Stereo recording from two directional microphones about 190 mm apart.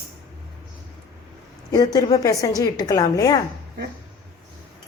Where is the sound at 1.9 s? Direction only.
20° left (ahead or behind).